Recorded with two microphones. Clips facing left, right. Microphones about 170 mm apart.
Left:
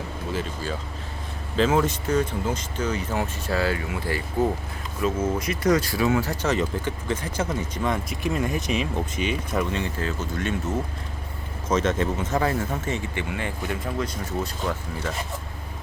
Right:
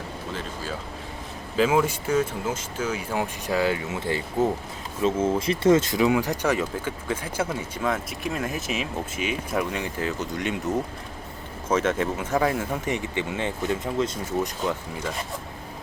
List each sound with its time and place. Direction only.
0.3 s speech: centre (ahead or behind)
10.0 s speech: 15° right (ahead or behind)